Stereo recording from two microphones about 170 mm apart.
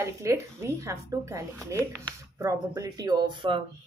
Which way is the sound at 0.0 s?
15° right (ahead or behind).